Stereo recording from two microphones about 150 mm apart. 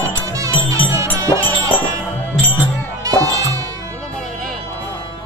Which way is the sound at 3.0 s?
25° right (ahead or behind).